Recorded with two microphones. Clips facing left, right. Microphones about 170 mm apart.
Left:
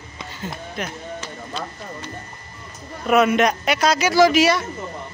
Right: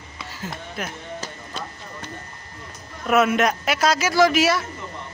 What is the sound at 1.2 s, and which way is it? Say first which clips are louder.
Clip-clop: left 3 dB; 50° right (ahead or behind).